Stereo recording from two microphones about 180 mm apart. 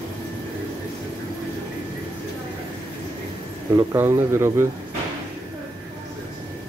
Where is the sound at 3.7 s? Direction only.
15° right (ahead or behind).